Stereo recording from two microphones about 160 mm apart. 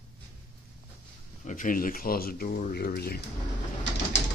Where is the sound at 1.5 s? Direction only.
55° left (ahead or behind); by 3.2 s 75° left (ahead or behind).